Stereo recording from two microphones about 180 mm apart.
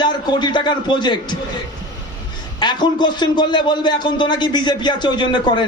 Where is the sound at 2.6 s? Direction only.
25° left (ahead or behind).